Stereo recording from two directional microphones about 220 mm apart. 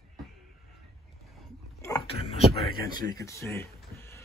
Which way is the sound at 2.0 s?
25° left (ahead or behind).